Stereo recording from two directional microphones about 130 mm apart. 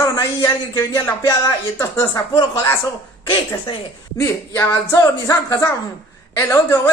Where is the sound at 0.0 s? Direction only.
25° left (ahead or behind).